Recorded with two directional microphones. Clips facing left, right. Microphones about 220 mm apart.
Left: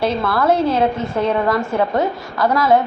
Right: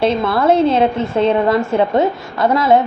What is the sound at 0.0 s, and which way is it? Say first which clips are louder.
A woman's voice: right 3 dB; 25° right (ahead or behind).